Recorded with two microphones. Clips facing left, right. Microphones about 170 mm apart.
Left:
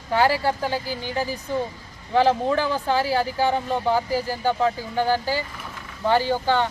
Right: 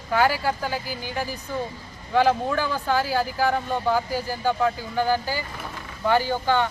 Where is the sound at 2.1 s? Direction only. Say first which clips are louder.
Left 1 dB; 30° left (ahead or behind).